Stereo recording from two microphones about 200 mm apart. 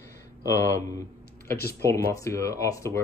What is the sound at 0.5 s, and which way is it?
Speech, 15° left (ahead or behind).